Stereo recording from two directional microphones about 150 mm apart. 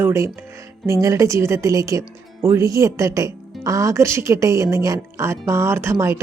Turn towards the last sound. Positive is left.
turn(degrees=-20)  # may be behind; listen again after turning